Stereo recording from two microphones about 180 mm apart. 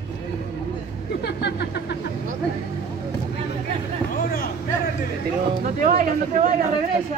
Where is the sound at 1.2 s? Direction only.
65° left (ahead or behind).